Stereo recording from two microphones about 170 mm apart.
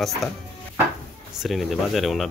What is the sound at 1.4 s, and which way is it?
Speech, centre (ahead or behind).